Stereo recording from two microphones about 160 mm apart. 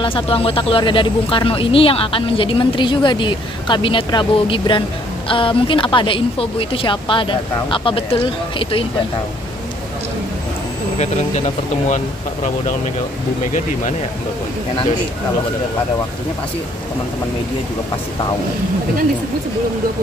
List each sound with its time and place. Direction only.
0.0 s speech: 35° left (ahead or behind)
11.0 s speech: 45° left (ahead or behind)